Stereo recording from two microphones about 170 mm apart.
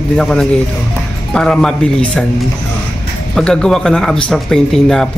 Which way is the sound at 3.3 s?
5° left (ahead or behind).